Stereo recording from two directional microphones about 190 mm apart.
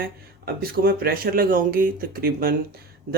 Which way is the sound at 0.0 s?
50° right (ahead or behind).